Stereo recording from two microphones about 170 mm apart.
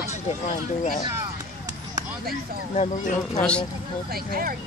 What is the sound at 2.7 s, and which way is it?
Speech, 45° left (ahead or behind).